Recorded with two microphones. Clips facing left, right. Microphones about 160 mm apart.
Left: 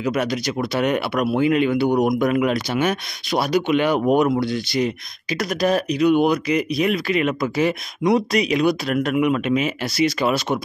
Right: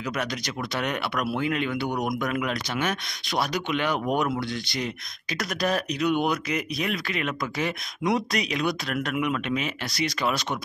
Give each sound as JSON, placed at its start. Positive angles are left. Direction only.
{"t": 0.1, "sound": "speech", "side_deg": 10}
{"t": 1.9, "sound": "a man's voice", "side_deg": 25}
{"t": 2.2, "sound": "speech", "side_deg": 15}